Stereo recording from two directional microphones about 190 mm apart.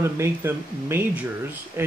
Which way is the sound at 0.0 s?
15° right (ahead or behind).